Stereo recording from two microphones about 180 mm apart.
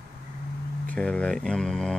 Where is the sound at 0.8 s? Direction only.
5° left (ahead or behind).